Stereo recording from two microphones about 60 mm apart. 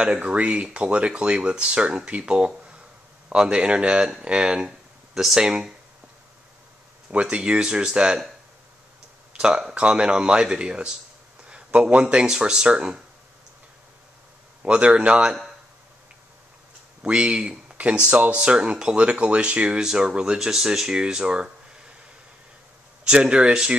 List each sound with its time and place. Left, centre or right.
0.0 s speech: centre
7.1 s speech: right
9.3 s speech: centre
14.6 s speech: centre
17.0 s speech: centre
23.0 s speech: centre